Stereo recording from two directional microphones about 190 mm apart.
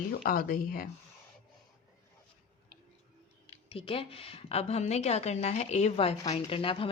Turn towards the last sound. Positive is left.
turn(degrees=30)  # may be behind; listen again after turning